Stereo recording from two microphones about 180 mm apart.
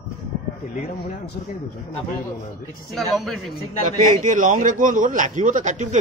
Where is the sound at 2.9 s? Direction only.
Centre (ahead or behind).